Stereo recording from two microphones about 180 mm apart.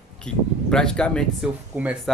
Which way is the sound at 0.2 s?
5° left (ahead or behind).